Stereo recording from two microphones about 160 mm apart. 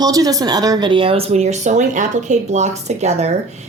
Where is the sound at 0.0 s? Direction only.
20° right (ahead or behind).